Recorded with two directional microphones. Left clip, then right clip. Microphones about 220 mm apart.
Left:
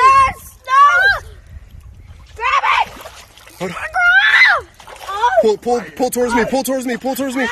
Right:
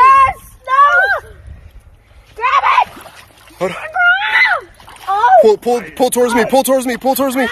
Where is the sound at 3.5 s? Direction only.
10° left (ahead or behind).